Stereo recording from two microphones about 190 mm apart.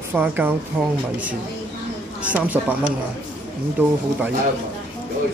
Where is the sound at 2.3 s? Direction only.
10° right (ahead or behind).